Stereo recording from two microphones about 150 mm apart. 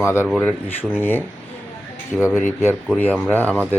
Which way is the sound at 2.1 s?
5° right (ahead or behind).